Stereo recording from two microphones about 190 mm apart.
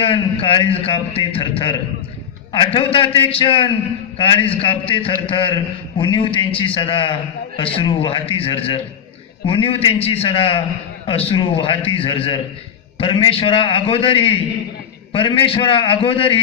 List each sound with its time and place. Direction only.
0.0 s a man's voice: 30° left (ahead or behind)